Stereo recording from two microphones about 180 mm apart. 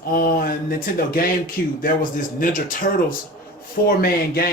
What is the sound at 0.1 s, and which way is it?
Speech, 55° left (ahead or behind).